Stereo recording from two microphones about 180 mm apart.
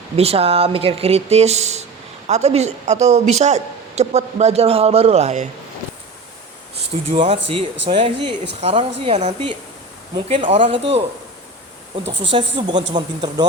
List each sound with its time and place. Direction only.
0.2 s speech: 35° right (ahead or behind)
7.1 s speech: 35° right (ahead or behind)
12.3 s speech: 25° right (ahead or behind)